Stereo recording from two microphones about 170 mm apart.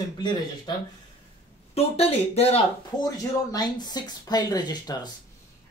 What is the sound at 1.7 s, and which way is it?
Speech, 35° left (ahead or behind).